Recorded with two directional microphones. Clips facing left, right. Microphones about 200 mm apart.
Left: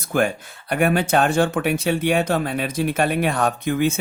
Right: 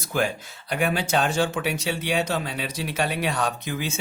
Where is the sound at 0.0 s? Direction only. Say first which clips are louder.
Left 5 dB; 55° left (ahead or behind).